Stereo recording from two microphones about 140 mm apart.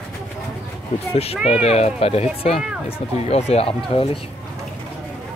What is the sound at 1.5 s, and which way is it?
Speech, 50° left (ahead or behind).